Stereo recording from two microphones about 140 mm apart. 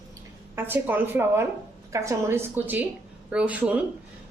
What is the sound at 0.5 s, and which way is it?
A woman's voice, 15° right (ahead or behind).